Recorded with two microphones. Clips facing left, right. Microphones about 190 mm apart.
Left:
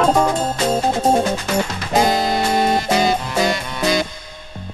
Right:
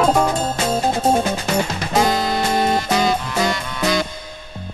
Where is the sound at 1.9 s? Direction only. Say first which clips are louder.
Left 2 dB; 25° left (ahead or behind).